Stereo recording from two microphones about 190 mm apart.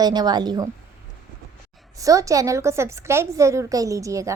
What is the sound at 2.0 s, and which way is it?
A woman's voice, 15° right (ahead or behind).